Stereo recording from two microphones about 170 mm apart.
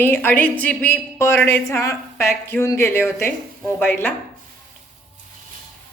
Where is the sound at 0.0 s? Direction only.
10° left (ahead or behind).